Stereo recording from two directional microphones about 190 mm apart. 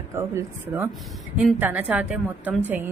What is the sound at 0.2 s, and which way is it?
A woman's voice, 10° right (ahead or behind).